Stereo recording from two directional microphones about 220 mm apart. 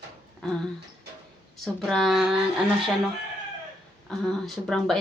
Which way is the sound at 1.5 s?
Centre (ahead or behind).